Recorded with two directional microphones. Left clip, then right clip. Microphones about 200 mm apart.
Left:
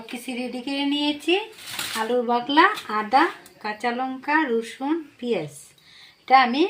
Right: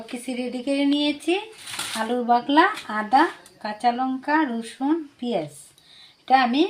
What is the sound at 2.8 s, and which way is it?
Speech, 40° right (ahead or behind).